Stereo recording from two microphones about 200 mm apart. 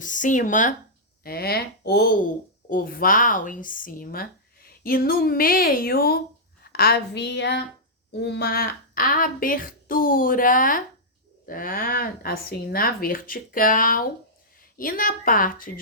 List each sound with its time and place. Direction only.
0.0 s speech: 40° left (ahead or behind)
1.2 s a woman's voice: 50° left (ahead or behind)